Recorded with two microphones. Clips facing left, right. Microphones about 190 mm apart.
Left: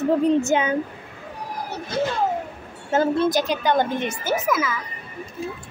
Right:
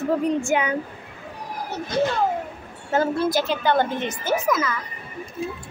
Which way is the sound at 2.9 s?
20° left (ahead or behind).